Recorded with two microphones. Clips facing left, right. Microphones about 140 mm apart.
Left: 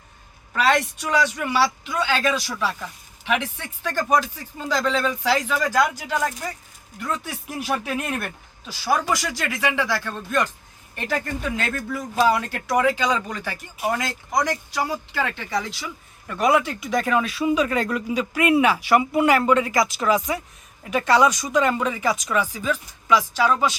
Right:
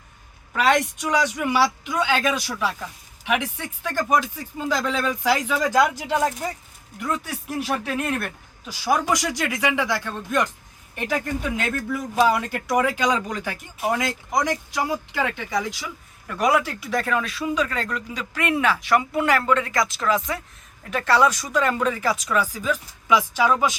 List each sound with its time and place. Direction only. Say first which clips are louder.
0.5 s speech: even; 15° right (ahead or behind)
5.9 s speech: right 2 dB; 25° right (ahead or behind)
7.3 s speech: right 1 dB; 5° left (ahead or behind)
8.6 s speech: right 1 dB; 15° right (ahead or behind)
13.7 s speech: right 1 dB; centre (ahead or behind)
14.0 s speech: even; 15° right (ahead or behind)
16.2 s speech: left 1 dB; 5° left (ahead or behind)
22.5 s speech: even; 10° right (ahead or behind)